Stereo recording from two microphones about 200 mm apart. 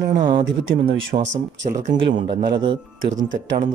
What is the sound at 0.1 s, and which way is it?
Speech, 40° right (ahead or behind).